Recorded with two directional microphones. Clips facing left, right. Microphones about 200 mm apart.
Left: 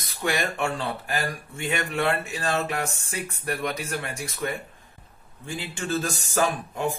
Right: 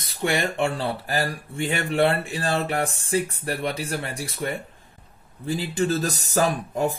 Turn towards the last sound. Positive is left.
turn(degrees=-40)  # may be behind; listen again after turning